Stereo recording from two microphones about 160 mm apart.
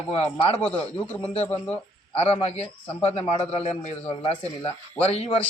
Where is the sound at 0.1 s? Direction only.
40° left (ahead or behind).